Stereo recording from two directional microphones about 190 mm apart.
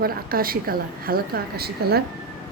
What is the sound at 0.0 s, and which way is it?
A woman's voice, 50° right (ahead or behind).